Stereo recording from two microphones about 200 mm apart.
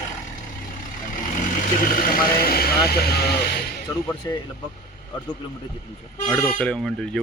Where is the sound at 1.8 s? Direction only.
45° left (ahead or behind).